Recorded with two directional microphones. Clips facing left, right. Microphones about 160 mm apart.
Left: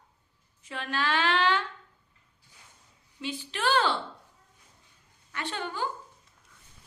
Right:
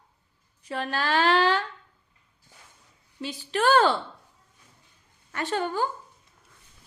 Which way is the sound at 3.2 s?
40° right (ahead or behind).